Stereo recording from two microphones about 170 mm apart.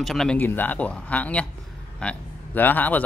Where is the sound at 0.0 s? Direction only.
Centre (ahead or behind).